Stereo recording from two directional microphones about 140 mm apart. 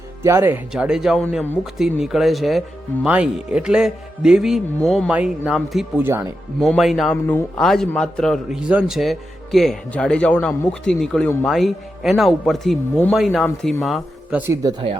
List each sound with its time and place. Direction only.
0.2 s speech: 15° right (ahead or behind)
0.7 s speech: 5° right (ahead or behind)
6.0 s speech: 15° right (ahead or behind)
6.6 s speech: centre (ahead or behind)
7.1 s speech: 10° left (ahead or behind)
14.3 s speech: 15° right (ahead or behind)